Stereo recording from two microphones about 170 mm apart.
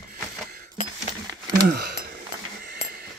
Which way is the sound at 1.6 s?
70° right (ahead or behind).